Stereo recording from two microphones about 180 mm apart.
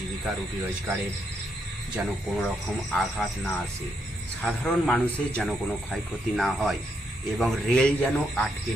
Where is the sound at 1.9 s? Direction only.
Centre (ahead or behind).